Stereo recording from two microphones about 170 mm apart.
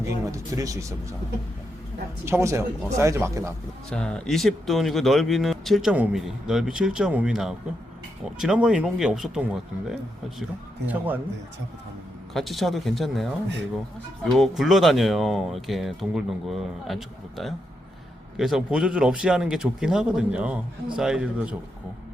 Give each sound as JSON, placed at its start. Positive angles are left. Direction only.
{"t": 0.0, "sound": "speech", "side_deg": -20}
{"t": 2.2, "sound": "speech", "side_deg": -15}
{"t": 3.8, "sound": "speech", "side_deg": 5}
{"t": 12.3, "sound": "speech", "side_deg": 0}
{"t": 14.3, "sound": "speech", "side_deg": 0}